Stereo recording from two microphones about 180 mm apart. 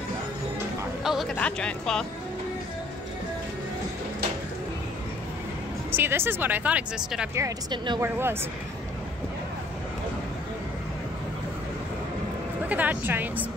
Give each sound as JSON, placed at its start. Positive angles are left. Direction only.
{"t": 1.0, "sound": "speech", "side_deg": 0}
{"t": 5.9, "sound": "speech", "side_deg": -10}
{"t": 7.3, "sound": "a woman's voice", "side_deg": -20}
{"t": 8.0, "sound": "speech", "side_deg": -15}
{"t": 12.6, "sound": "speech", "side_deg": -10}